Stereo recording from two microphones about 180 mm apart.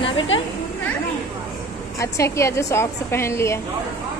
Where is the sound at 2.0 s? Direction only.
15° left (ahead or behind).